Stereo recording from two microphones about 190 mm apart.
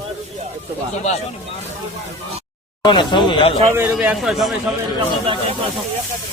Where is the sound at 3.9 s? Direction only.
5° right (ahead or behind).